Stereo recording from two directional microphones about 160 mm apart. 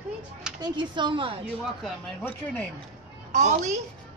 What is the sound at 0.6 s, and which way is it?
Speech, 30° right (ahead or behind).